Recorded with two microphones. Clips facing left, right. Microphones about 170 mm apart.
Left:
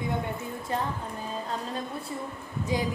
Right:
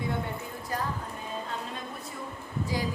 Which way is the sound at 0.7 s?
25° left (ahead or behind).